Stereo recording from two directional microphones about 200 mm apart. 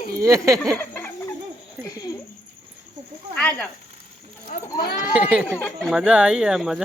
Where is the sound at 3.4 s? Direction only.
5° left (ahead or behind).